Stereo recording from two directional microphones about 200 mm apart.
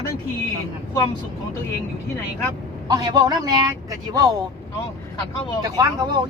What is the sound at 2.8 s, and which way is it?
Speech, 20° right (ahead or behind).